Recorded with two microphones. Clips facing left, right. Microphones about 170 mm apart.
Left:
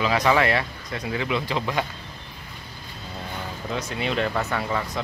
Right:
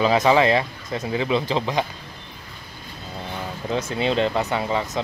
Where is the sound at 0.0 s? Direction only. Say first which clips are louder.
Right 4 dB; 25° right (ahead or behind).